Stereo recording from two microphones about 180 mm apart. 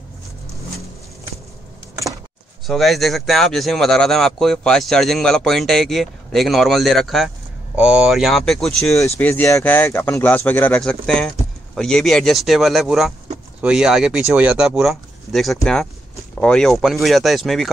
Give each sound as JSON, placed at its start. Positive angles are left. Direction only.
{"t": 2.6, "sound": "speech", "side_deg": 0}
{"t": 8.8, "sound": "speech", "side_deg": 15}